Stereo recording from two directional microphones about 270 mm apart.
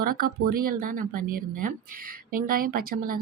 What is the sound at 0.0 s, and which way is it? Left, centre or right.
Speech, right.